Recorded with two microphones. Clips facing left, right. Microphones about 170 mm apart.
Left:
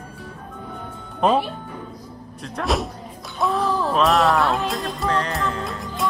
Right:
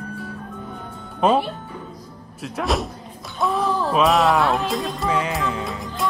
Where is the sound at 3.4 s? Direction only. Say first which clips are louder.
Even; centre (ahead or behind).